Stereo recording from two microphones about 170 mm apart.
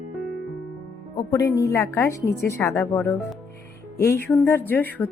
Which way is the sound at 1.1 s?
20° left (ahead or behind).